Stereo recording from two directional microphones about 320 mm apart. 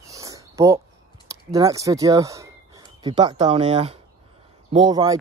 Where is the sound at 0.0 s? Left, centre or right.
Centre.